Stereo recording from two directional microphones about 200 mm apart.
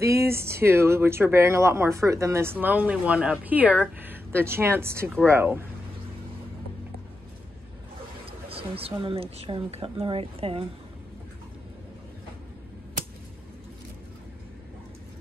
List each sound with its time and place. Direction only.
0.0 s speech: 15° right (ahead or behind)
8.3 s speech: 30° right (ahead or behind)